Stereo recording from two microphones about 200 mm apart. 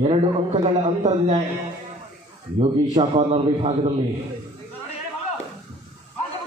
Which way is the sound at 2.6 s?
30° right (ahead or behind).